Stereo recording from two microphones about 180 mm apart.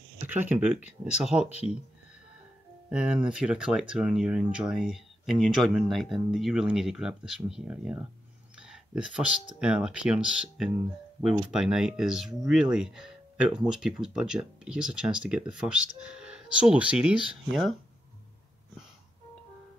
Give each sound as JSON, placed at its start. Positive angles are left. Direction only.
{"t": 0.3, "sound": "speech", "side_deg": -10}
{"t": 1.5, "sound": "speech", "side_deg": 35}
{"t": 2.9, "sound": "speech", "side_deg": -5}